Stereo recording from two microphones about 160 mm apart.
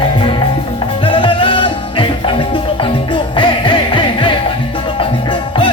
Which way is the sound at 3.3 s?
30° left (ahead or behind).